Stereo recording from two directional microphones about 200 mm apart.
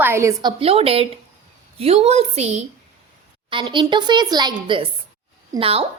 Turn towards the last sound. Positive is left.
turn(degrees=-30)  # may be behind; listen again after turning